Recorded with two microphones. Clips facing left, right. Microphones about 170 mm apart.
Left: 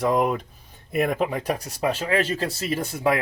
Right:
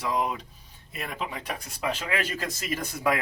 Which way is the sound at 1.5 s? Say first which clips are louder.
Left 6 dB; 35° left (ahead or behind).